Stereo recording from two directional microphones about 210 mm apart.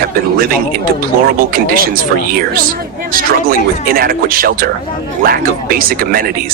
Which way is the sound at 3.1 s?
45° right (ahead or behind).